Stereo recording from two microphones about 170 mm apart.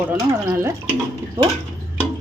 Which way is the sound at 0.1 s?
10° right (ahead or behind).